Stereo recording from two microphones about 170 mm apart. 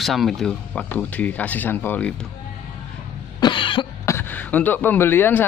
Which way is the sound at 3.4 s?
30° left (ahead or behind).